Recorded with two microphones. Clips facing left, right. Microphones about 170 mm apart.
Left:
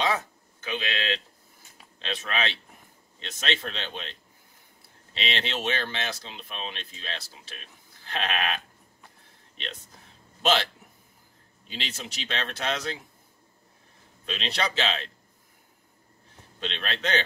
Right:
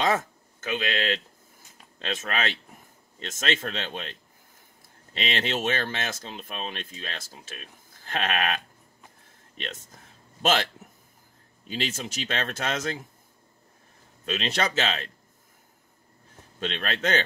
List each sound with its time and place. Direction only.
0.0 s speech: 45° right (ahead or behind)
9.6 s speech: 45° right (ahead or behind)
14.2 s speech: 45° right (ahead or behind)
16.5 s speech: 45° right (ahead or behind)